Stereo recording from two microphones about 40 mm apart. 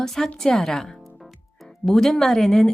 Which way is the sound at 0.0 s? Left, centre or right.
Centre.